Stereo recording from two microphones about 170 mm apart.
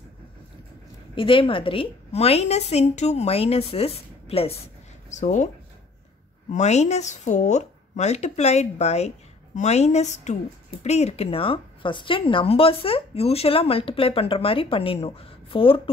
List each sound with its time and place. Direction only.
1.1 s a woman's voice: 30° left (ahead or behind)
6.5 s a woman's voice: 40° left (ahead or behind)